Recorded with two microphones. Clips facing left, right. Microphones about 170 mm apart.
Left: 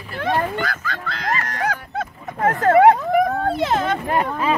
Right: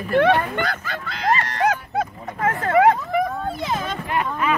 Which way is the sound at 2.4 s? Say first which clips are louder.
Left 4 dB; 35° left (ahead or behind).